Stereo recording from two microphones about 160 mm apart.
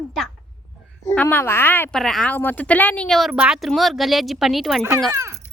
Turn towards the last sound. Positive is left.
turn(degrees=-20)  # may be behind; listen again after turning